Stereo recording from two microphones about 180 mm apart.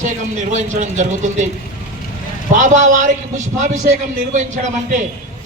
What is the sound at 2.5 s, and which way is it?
Speech, 45° right (ahead or behind).